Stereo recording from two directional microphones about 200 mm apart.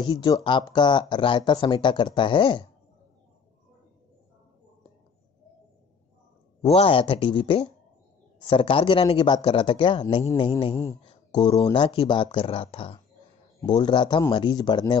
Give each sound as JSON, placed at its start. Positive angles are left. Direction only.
{"t": 0.0, "sound": "speech", "side_deg": 25}
{"t": 6.6, "sound": "speech", "side_deg": 25}
{"t": 11.3, "sound": "speech", "side_deg": 25}